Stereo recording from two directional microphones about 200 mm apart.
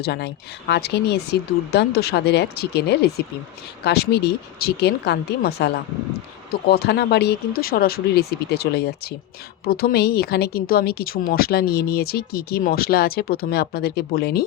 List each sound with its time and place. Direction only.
0.0 s speech: 55° left (ahead or behind)